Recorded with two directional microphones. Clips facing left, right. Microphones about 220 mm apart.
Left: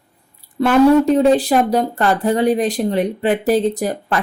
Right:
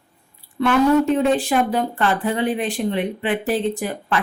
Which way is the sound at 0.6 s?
40° left (ahead or behind).